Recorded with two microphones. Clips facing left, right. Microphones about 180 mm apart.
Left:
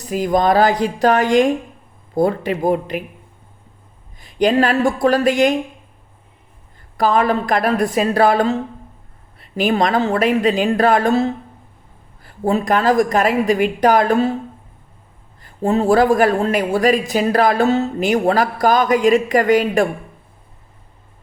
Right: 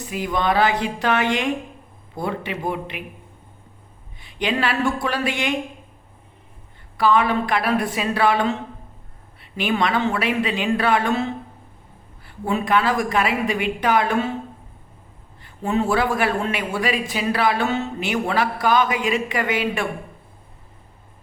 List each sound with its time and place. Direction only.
0.1 s a man's voice: 40° left (ahead or behind)
4.2 s a man's voice: 40° left (ahead or behind)
6.9 s a man's voice: 40° left (ahead or behind)
15.4 s a man's voice: 40° left (ahead or behind)